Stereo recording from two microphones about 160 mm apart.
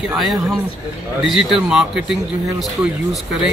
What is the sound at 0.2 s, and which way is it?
Speech, centre (ahead or behind).